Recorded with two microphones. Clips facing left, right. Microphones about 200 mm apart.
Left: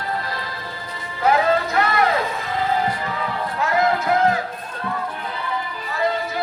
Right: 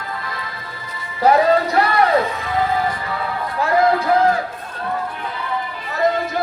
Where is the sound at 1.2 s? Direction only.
35° right (ahead or behind).